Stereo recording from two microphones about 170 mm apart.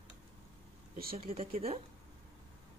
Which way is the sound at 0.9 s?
60° right (ahead or behind).